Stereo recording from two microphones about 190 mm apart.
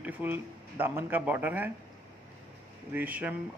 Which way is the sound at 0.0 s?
10° right (ahead or behind).